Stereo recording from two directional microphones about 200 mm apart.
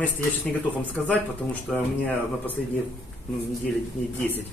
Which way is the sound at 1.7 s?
Centre (ahead or behind).